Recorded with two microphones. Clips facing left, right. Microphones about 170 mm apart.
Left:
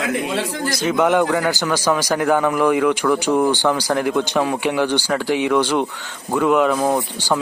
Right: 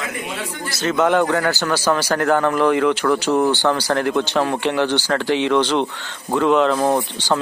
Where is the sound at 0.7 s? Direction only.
15° left (ahead or behind).